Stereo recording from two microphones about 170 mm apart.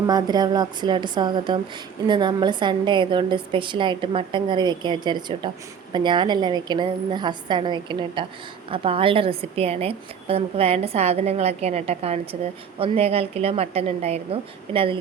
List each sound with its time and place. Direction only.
0.1 s a woman's voice: 25° right (ahead or behind)